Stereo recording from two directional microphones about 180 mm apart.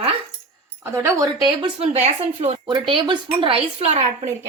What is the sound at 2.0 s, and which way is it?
A woman's voice, 35° right (ahead or behind).